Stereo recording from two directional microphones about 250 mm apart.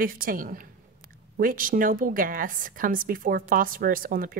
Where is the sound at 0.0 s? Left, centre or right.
Right.